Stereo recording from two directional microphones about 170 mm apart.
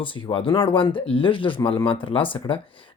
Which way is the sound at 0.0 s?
30° left (ahead or behind).